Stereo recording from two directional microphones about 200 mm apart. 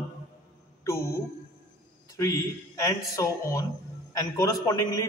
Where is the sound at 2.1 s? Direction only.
15° left (ahead or behind).